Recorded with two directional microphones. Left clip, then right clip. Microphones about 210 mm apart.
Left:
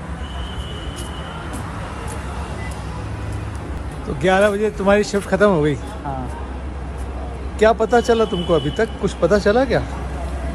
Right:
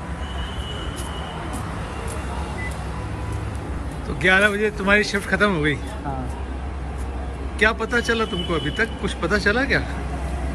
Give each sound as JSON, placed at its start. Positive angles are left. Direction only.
{"t": 4.2, "sound": "speech", "side_deg": 15}
{"t": 7.5, "sound": "speech", "side_deg": 25}